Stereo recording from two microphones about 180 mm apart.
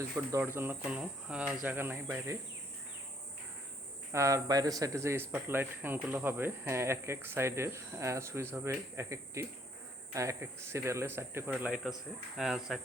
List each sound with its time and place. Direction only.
0.3 s speech: 15° right (ahead or behind)
4.1 s speech: 15° right (ahead or behind)
12.4 s cricket: centre (ahead or behind)